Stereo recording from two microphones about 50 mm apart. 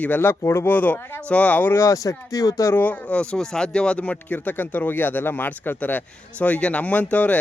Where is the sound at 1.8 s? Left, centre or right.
Left.